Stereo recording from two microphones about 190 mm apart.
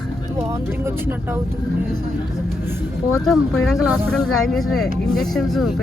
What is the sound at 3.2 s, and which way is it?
Speech, centre (ahead or behind).